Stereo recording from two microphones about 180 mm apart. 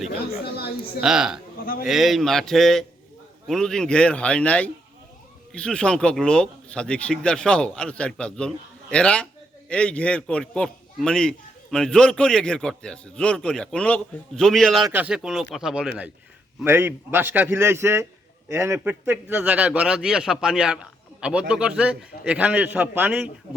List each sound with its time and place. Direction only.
0.5 s a woman's voice: 60° left (ahead or behind)
1.0 s a man's voice: 5° right (ahead or behind)
14.8 s a man's voice: 10° right (ahead or behind)